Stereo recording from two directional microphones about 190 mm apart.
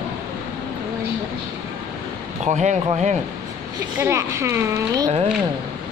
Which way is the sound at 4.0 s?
15° right (ahead or behind).